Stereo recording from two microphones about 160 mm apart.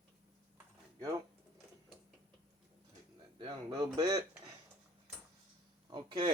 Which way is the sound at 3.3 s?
25° right (ahead or behind).